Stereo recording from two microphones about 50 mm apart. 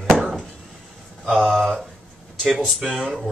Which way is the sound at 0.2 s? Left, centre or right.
Centre.